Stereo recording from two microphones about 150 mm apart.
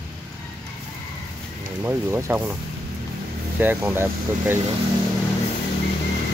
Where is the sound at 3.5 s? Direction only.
15° right (ahead or behind).